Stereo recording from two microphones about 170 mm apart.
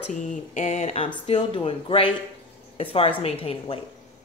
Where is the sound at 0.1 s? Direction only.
50° left (ahead or behind).